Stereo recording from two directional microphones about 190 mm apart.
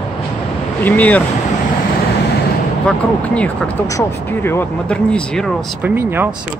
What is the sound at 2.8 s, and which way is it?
Speech, 5° left (ahead or behind).